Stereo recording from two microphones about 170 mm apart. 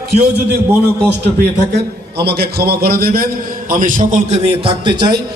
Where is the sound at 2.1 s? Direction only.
70° right (ahead or behind).